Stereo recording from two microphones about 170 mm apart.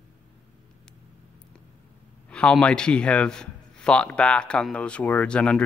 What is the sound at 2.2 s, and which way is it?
A man's voice, 5° left (ahead or behind).